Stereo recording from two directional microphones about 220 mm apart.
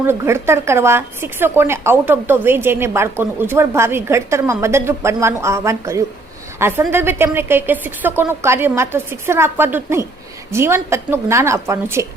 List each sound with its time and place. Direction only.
0.0 s a woman's voice: 10° right (ahead or behind)